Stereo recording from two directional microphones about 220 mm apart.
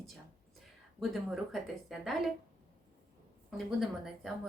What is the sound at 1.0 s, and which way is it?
Speech, centre (ahead or behind).